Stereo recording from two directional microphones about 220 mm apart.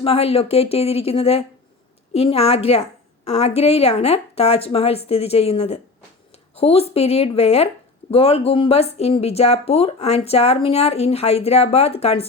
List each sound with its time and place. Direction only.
0.0 s speech: 25° left (ahead or behind)